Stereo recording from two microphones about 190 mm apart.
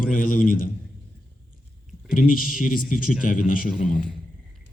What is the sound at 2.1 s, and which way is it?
A man's voice, 45° left (ahead or behind).